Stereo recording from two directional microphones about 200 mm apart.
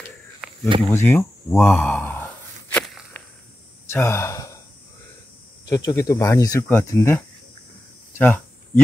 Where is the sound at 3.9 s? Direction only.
10° left (ahead or behind).